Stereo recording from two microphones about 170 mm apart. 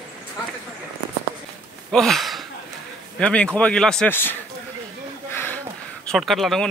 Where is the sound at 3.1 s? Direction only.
5° left (ahead or behind).